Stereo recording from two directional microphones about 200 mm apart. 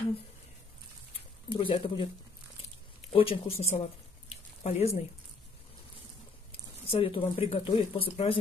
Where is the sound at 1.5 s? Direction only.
25° left (ahead or behind).